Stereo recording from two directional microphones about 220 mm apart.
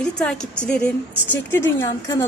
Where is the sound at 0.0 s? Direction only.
5° left (ahead or behind).